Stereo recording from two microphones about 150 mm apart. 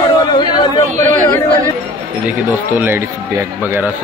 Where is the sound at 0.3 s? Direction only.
30° left (ahead or behind).